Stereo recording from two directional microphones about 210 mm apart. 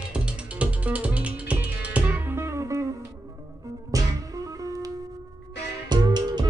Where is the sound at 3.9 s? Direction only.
15° right (ahead or behind).